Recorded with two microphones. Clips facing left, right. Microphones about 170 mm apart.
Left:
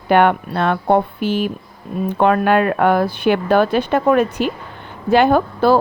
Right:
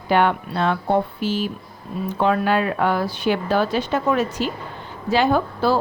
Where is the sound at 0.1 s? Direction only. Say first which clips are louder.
Left 5 dB; 60° left (ahead or behind).